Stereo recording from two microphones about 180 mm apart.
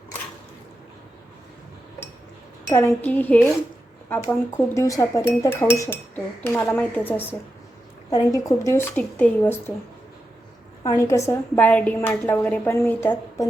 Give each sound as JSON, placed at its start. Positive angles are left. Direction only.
{"t": 2.6, "sound": "a woman's voice", "side_deg": 15}
{"t": 10.8, "sound": "a woman's voice", "side_deg": 15}